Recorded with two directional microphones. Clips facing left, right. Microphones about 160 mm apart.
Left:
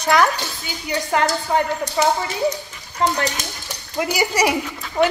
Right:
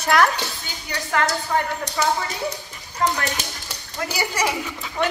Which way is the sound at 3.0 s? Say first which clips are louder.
Left 2 dB; 25° left (ahead or behind).